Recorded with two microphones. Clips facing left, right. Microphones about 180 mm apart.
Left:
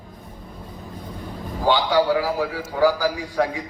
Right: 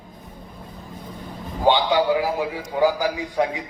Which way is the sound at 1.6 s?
20° right (ahead or behind).